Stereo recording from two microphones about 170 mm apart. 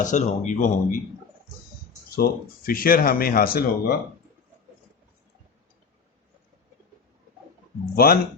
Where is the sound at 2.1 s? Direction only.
60° left (ahead or behind).